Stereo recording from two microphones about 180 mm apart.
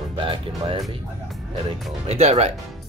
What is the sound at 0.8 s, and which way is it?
Speech, centre (ahead or behind).